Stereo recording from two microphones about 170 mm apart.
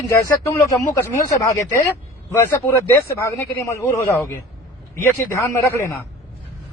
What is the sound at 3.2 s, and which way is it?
Speech, 20° left (ahead or behind).